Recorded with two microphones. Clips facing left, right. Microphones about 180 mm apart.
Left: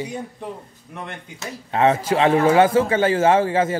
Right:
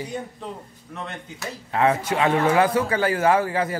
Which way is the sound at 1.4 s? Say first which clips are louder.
Left 3 dB; 25° left (ahead or behind).